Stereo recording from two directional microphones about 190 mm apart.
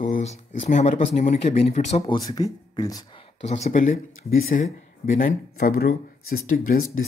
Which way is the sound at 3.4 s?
35° left (ahead or behind).